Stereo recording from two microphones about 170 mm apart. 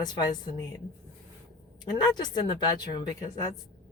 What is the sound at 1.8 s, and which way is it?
Speech, 25° left (ahead or behind).